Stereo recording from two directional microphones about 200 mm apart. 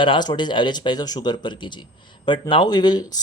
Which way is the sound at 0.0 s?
25° left (ahead or behind).